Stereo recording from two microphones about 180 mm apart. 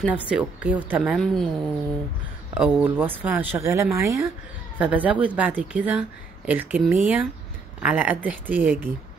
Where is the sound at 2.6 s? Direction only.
5° right (ahead or behind).